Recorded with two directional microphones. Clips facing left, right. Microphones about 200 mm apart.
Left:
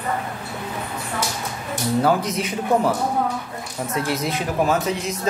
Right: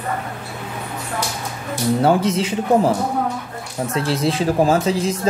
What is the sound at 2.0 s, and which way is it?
Speech, 25° right (ahead or behind).